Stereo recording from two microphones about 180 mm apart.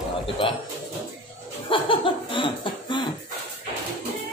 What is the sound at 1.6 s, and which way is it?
Laughter, 30° left (ahead or behind).